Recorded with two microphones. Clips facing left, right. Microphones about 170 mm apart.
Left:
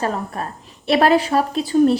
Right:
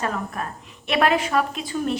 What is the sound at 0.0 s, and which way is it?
Speech, 35° left (ahead or behind).